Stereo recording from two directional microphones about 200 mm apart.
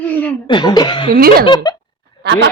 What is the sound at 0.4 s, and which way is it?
Speech, 20° left (ahead or behind).